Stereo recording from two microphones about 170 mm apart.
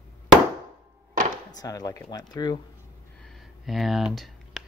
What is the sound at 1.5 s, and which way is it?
Speech, 20° left (ahead or behind).